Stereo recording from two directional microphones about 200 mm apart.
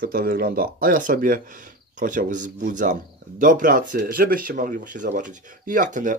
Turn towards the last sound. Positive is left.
turn(degrees=-40)  # may be behind; listen again after turning